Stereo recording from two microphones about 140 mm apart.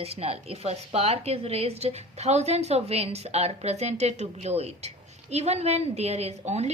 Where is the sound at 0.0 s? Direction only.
45° right (ahead or behind).